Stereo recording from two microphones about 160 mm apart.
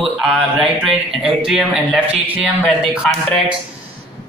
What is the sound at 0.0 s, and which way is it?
Speech, centre (ahead or behind).